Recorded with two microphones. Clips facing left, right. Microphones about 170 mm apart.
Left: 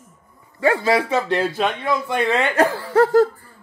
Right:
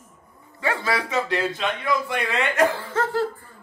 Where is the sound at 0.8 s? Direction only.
30° left (ahead or behind).